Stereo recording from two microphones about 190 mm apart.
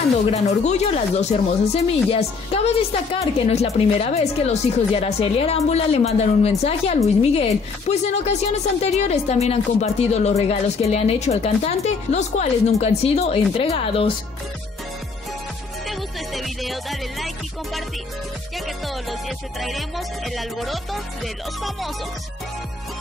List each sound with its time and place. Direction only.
0.3 s speech: 35° left (ahead or behind)
15.9 s music: centre (ahead or behind)
19.0 s music: centre (ahead or behind)